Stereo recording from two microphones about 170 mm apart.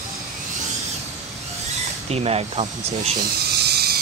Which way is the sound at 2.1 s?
35° right (ahead or behind).